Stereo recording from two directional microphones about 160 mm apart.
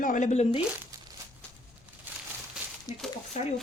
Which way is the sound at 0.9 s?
20° right (ahead or behind).